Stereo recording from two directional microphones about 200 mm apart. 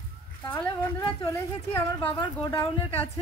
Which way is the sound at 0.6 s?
15° left (ahead or behind).